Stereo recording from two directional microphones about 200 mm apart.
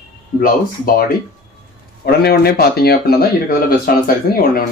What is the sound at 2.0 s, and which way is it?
Speech, 50° left (ahead or behind).